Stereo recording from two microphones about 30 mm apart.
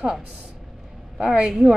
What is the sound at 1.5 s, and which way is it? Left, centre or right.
Speech, centre.